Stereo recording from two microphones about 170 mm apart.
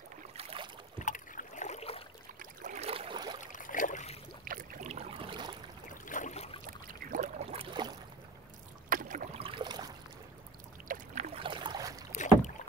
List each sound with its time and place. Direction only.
0.4 s boat: 35° right (ahead or behind)
0.9 s rowboat: 50° left (ahead or behind)
2.3 s boat: 45° right (ahead or behind); by 3.3 s 30° right (ahead or behind)
3.5 s boat: 50° left (ahead or behind)
4.5 s boat: 50° right (ahead or behind); by 5.6 s 30° right (ahead or behind)
6.0 s boat: 50° left (ahead or behind)
6.6 s boat: 55° right (ahead or behind); by 7.9 s 30° right (ahead or behind)
8.8 s boat: 50° right (ahead or behind)
9.4 s a sound: 30° right (ahead or behind)
10.9 s boat: 55° right (ahead or behind)
11.3 s boat: 30° right (ahead or behind)
12.1 s rowboat: 45° left (ahead or behind)